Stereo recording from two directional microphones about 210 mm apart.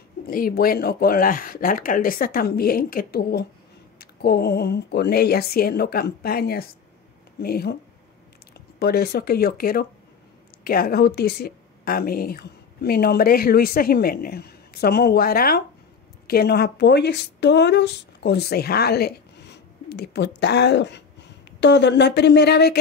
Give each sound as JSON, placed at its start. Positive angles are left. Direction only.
{"t": 0.3, "sound": "speech", "side_deg": 45}
{"t": 8.7, "sound": "speech", "side_deg": 50}